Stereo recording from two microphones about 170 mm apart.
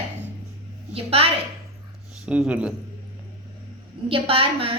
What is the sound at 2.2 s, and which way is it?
Speech, 5° right (ahead or behind).